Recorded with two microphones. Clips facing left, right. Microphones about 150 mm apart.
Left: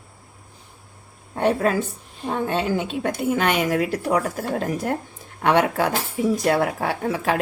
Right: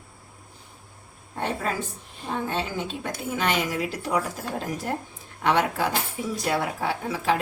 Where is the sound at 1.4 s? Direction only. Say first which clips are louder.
Left 8 dB; 70° left (ahead or behind).